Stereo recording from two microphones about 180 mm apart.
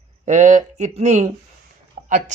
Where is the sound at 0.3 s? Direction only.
40° right (ahead or behind).